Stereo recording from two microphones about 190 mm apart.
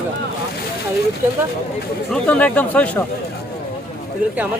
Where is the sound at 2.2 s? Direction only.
10° left (ahead or behind).